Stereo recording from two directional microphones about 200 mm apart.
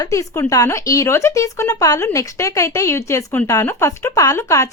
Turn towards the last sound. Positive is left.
turn(degrees=15)  # may be behind; listen again after turning